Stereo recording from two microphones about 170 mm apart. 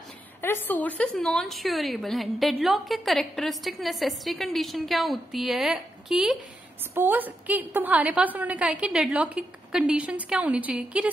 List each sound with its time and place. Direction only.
0.4 s a woman's voice: 15° left (ahead or behind); by 11.1 s 5° right (ahead or behind)